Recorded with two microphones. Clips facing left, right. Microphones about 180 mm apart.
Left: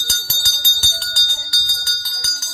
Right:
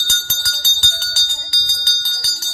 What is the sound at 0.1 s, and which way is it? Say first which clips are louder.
Jingle bell: right 2 dB; 30° left (ahead or behind).